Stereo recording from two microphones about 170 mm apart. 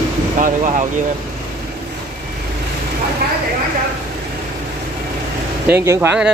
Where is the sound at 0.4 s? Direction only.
50° right (ahead or behind).